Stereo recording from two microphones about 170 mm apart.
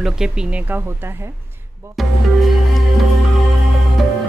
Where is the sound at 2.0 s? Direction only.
Centre (ahead or behind).